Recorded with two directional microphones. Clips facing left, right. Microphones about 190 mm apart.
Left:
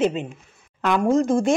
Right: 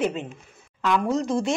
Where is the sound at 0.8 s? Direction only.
50° left (ahead or behind).